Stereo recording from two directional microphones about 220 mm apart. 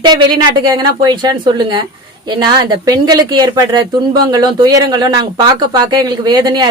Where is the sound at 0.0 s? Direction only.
20° right (ahead or behind).